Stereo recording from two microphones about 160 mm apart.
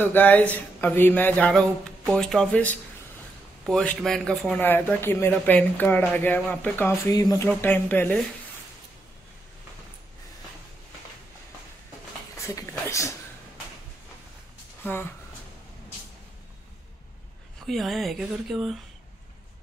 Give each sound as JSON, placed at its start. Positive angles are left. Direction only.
{"t": 0.0, "sound": "speech", "side_deg": 10}
{"t": 7.1, "sound": "speech", "side_deg": 25}
{"t": 7.4, "sound": "speech", "side_deg": 10}
{"t": 12.4, "sound": "speech", "side_deg": 20}
{"t": 14.8, "sound": "speech", "side_deg": 10}
{"t": 17.6, "sound": "speech", "side_deg": 0}